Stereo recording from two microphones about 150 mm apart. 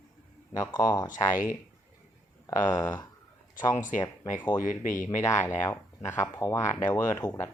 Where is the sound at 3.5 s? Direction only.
60° left (ahead or behind).